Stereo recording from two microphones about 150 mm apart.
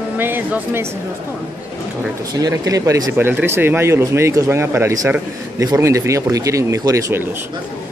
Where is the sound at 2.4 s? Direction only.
25° right (ahead or behind).